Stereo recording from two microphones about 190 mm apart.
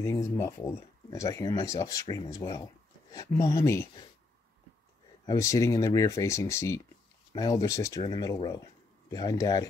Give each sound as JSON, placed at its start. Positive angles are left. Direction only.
{"t": 0.0, "sound": "speech", "side_deg": 15}
{"t": 5.2, "sound": "speech", "side_deg": 15}